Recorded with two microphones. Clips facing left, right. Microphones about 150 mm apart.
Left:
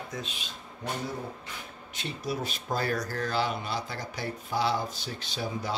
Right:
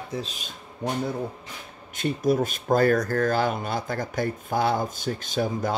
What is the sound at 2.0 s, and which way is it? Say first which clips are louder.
Speech: right 11 dB; 50° right (ahead or behind).